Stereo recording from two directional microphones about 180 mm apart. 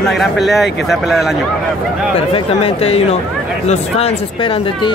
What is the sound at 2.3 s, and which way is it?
Speech, 35° left (ahead or behind).